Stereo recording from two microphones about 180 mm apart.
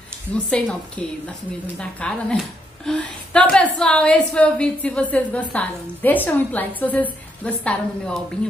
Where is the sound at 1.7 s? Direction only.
5° left (ahead or behind).